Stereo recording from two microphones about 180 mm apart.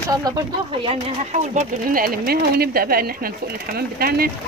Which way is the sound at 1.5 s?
50° right (ahead or behind).